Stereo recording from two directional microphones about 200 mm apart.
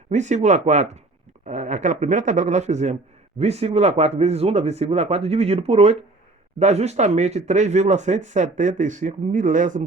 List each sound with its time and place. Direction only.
0.1 s speech: 35° right (ahead or behind)